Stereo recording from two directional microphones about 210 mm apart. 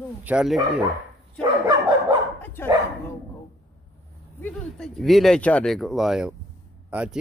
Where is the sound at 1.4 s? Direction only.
20° right (ahead or behind).